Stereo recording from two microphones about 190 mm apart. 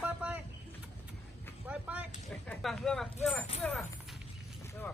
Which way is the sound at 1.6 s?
5° right (ahead or behind).